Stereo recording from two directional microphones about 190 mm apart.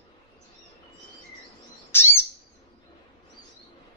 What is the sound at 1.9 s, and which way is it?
Bird, 10° left (ahead or behind).